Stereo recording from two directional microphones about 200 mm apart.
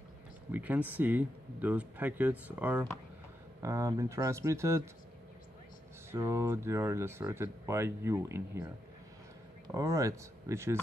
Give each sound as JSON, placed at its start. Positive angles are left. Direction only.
{"t": 0.5, "sound": "speech", "side_deg": -10}
{"t": 6.1, "sound": "speech", "side_deg": -15}
{"t": 9.8, "sound": "speech", "side_deg": -15}